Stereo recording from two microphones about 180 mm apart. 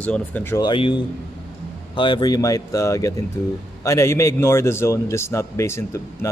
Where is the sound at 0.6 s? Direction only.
25° left (ahead or behind).